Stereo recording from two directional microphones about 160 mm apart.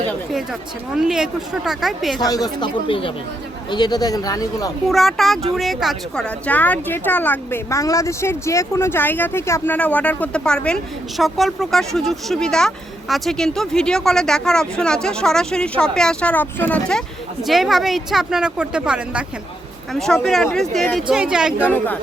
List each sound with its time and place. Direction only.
0.9 s speech: 5° right (ahead or behind)
2.1 s speech: 25° left (ahead or behind)
4.9 s speech: centre (ahead or behind)